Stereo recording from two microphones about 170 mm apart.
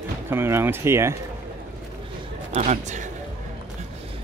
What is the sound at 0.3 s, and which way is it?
Speech, 15° right (ahead or behind).